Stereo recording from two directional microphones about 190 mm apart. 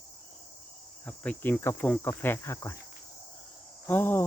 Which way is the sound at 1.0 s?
5° left (ahead or behind).